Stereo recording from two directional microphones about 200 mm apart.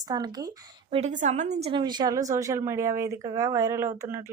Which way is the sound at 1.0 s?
35° right (ahead or behind).